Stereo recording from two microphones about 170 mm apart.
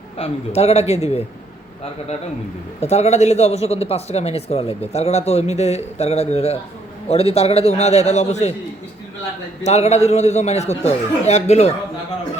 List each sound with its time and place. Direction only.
0.2 s speech: 40° left (ahead or behind)
2.8 s speech: 40° left (ahead or behind)
9.6 s speech: 40° left (ahead or behind)